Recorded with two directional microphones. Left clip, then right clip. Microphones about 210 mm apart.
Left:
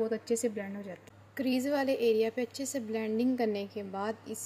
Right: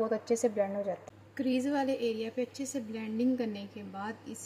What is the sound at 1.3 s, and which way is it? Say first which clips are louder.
A woman's voice: left 1 dB; 40° left (ahead or behind).